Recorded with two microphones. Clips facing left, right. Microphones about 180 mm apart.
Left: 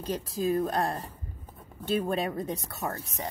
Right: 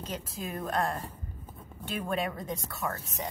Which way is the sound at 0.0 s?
35° left (ahead or behind).